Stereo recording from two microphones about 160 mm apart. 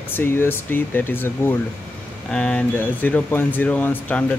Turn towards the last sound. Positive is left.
turn(degrees=10)  # may be behind; listen again after turning